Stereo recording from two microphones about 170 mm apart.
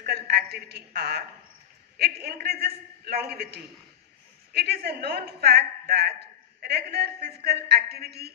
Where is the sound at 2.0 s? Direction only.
70° right (ahead or behind).